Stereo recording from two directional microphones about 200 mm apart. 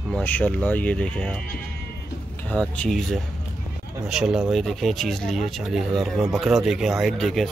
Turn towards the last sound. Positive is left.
turn(degrees=0)  # may be behind; listen again after turning